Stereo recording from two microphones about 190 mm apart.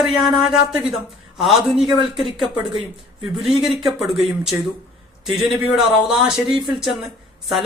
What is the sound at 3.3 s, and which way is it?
Speech, centre (ahead or behind).